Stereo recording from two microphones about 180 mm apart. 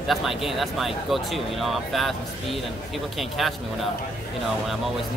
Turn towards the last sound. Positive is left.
turn(degrees=0)  # may be behind; listen again after turning